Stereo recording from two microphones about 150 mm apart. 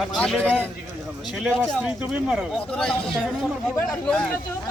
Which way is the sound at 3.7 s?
20° left (ahead or behind).